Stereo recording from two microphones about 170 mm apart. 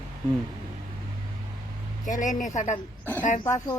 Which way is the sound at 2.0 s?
50° left (ahead or behind).